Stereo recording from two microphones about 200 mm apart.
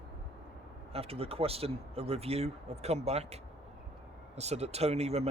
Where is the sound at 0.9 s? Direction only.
30° right (ahead or behind).